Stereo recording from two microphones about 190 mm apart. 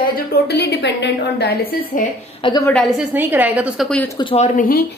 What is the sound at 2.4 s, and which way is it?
Speech, 20° left (ahead or behind).